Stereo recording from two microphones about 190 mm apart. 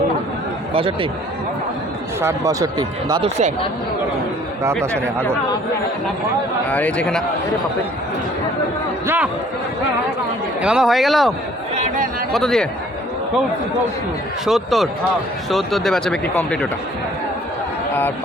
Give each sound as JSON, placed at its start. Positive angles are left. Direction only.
{"t": 0.7, "sound": "speech", "side_deg": -30}
{"t": 2.2, "sound": "speech", "side_deg": -15}
{"t": 3.2, "sound": "speech", "side_deg": -35}
{"t": 6.7, "sound": "speech", "side_deg": 5}
{"t": 9.0, "sound": "speech", "side_deg": -10}
{"t": 10.6, "sound": "speech", "side_deg": -5}
{"t": 11.7, "sound": "a sound", "side_deg": -35}
{"t": 12.3, "sound": "speech", "side_deg": 0}
{"t": 14.4, "sound": "speech", "side_deg": 0}